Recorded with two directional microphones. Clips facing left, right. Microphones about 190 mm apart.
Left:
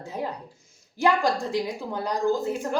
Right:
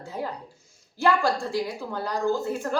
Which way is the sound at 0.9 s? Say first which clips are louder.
Even; 20° left (ahead or behind).